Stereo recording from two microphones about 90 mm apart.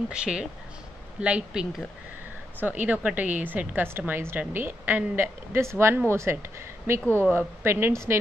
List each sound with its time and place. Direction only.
0.1 s speech: 10° right (ahead or behind)
2.6 s a woman's voice: 20° right (ahead or behind)